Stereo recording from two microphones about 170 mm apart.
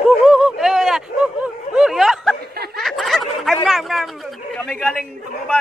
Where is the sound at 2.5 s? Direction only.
70° right (ahead or behind).